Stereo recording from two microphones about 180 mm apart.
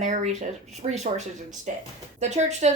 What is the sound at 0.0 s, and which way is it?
A woman's voice, 40° right (ahead or behind).